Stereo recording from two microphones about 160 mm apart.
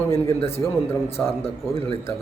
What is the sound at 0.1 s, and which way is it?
Speech, 15° left (ahead or behind).